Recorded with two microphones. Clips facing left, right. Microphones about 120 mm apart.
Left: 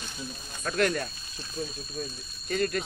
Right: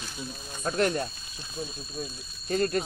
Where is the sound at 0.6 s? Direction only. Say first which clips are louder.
Right 1 dB; 25° right (ahead or behind).